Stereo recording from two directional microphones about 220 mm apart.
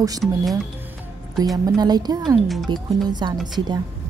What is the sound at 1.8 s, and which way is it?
Speech, 20° right (ahead or behind).